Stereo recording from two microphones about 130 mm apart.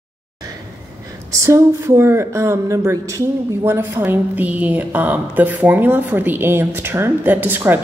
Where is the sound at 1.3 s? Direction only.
25° right (ahead or behind).